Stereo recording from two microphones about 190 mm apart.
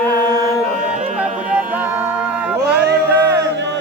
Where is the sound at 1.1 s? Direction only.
5° right (ahead or behind).